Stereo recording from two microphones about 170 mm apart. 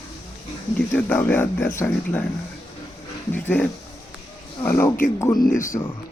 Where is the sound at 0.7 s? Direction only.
10° left (ahead or behind).